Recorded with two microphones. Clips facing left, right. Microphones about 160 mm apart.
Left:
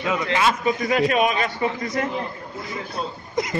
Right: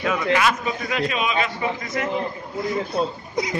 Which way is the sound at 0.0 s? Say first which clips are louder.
Right 1 dB; 20° left (ahead or behind).